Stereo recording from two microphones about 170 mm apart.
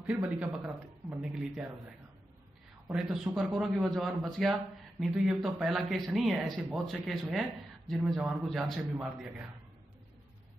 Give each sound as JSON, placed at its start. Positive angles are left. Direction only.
{"t": 0.0, "sound": "speech", "side_deg": -5}
{"t": 2.9, "sound": "speech", "side_deg": -5}